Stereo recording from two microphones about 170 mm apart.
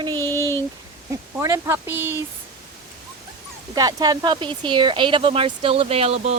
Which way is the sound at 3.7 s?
25° right (ahead or behind).